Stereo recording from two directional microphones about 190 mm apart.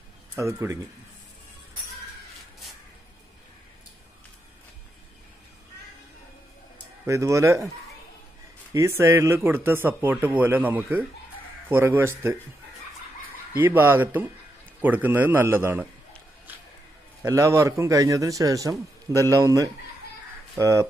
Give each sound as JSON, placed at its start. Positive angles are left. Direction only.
{"t": 0.4, "sound": "speech", "side_deg": -15}
{"t": 7.1, "sound": "speech", "side_deg": -15}
{"t": 8.7, "sound": "speech", "side_deg": -15}
{"t": 13.6, "sound": "speech", "side_deg": -10}
{"t": 17.2, "sound": "speech", "side_deg": -15}